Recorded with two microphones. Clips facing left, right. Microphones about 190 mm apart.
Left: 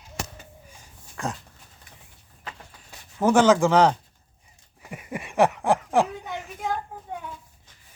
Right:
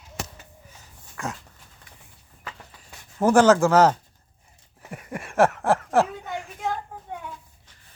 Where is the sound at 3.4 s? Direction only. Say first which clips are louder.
Right 1 dB; 5° right (ahead or behind).